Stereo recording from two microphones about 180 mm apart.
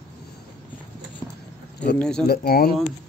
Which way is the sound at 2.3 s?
55° left (ahead or behind).